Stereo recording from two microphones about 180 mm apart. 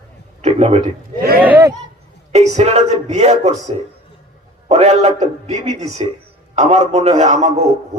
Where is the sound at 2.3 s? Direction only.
40° right (ahead or behind).